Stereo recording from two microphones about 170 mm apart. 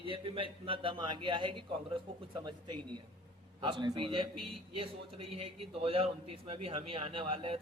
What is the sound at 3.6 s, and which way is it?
Speech, 25° right (ahead or behind).